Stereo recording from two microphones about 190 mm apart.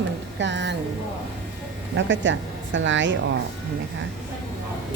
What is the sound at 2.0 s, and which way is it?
A woman's voice, 80° right.